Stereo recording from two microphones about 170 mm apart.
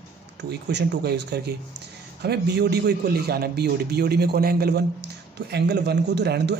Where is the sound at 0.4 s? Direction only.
90° right.